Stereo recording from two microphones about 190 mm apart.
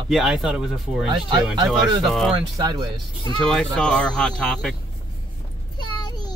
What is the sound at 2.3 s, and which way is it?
Speech, 20° right (ahead or behind).